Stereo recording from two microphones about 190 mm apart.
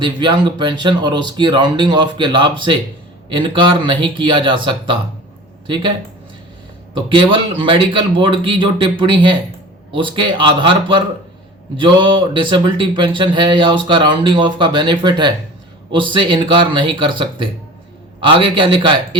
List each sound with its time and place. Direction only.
0.0 s speech: 25° right (ahead or behind)
7.1 s speech: 25° right (ahead or behind)